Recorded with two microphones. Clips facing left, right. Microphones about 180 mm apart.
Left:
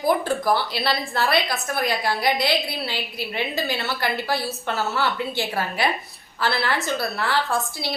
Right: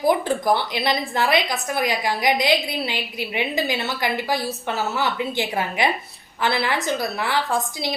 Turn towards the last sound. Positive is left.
turn(degrees=-15)  # may be behind; listen again after turning